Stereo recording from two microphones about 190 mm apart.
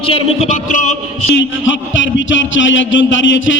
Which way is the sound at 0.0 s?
30° left (ahead or behind).